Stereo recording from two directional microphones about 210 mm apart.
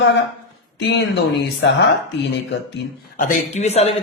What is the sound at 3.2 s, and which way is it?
Speech, 35° left (ahead or behind).